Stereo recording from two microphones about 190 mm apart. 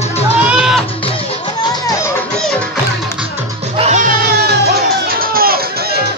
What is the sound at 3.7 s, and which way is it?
Music, 40° right (ahead or behind).